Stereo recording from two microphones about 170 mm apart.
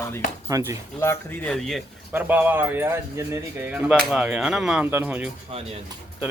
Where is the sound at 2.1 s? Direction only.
10° right (ahead or behind).